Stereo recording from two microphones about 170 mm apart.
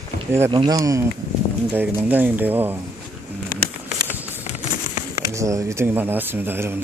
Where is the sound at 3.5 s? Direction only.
55° left (ahead or behind).